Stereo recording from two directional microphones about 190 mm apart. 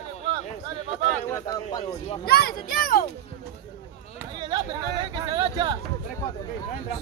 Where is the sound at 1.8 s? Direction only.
30° left (ahead or behind).